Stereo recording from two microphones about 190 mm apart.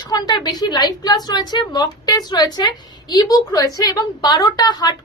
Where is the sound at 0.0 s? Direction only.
20° left (ahead or behind).